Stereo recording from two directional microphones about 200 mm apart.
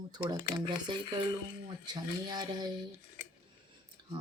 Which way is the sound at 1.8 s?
20° right (ahead or behind).